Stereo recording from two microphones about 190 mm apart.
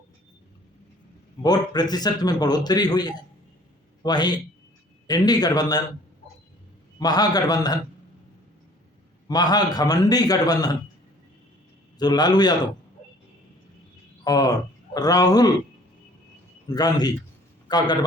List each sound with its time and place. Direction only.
1.4 s a man's voice: 20° left (ahead or behind)
7.0 s a man's voice: 20° left (ahead or behind)
9.2 s a man's voice: 20° left (ahead or behind)
11.9 s a man's voice: 20° left (ahead or behind)
14.3 s a man's voice: 20° left (ahead or behind)
16.6 s a man's voice: 20° left (ahead or behind)